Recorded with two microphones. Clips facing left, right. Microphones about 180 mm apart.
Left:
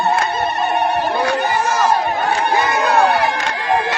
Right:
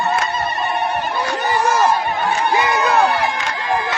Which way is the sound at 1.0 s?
60° left (ahead or behind).